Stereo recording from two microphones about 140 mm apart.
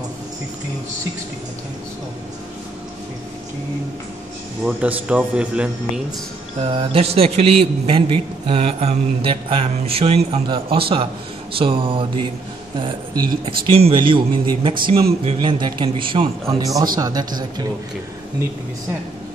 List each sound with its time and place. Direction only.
4.6 s speech: 10° right (ahead or behind)
6.6 s a man's voice: 40° right (ahead or behind)
13.5 s speech: 40° right (ahead or behind)
16.4 s speech: 25° right (ahead or behind)